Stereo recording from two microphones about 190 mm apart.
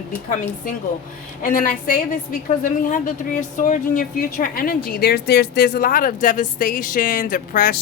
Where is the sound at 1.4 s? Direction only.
50° left (ahead or behind).